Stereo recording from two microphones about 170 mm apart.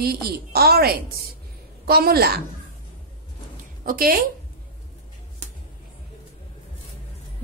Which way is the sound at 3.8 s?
55° right (ahead or behind).